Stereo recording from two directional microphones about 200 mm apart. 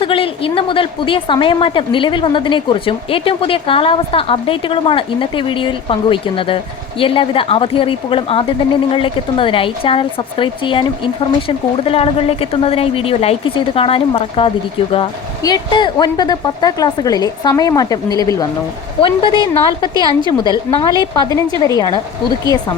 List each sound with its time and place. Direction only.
0.0 s a woman's voice: 25° left (ahead or behind)